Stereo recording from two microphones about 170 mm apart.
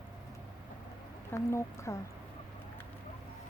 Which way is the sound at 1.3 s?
15° left (ahead or behind).